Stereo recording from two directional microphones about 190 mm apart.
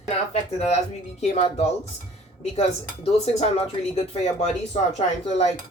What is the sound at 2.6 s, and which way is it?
Speech, 35° left (ahead or behind).